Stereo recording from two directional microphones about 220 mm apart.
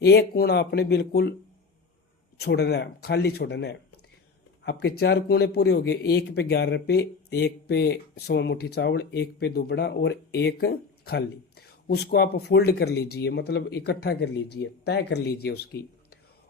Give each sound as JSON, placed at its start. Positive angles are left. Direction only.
{"t": 0.0, "sound": "speech", "side_deg": 45}
{"t": 2.4, "sound": "speech", "side_deg": 50}